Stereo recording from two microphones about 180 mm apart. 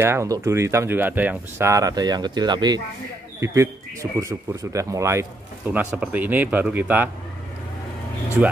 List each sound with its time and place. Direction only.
0.0 s speech: 15° right (ahead or behind)